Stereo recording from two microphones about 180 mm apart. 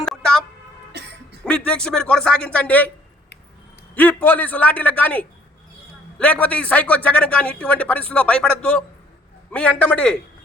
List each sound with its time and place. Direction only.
0.0 s a sound: 5° left (ahead or behind)
0.9 s cough: 70° right (ahead or behind)
1.5 s speech: 5° left (ahead or behind)
3.9 s a man's voice: 10° left (ahead or behind)